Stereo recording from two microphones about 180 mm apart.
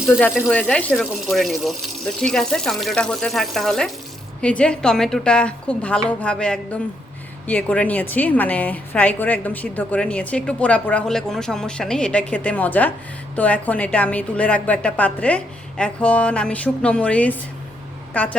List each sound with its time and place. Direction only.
0.3 s a woman's voice: centre (ahead or behind)